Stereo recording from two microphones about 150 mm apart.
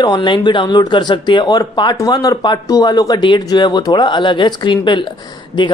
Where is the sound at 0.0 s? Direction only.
30° left (ahead or behind).